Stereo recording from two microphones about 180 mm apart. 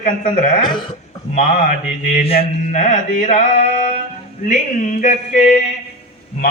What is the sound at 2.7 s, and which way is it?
A man's voice, 45° left (ahead or behind).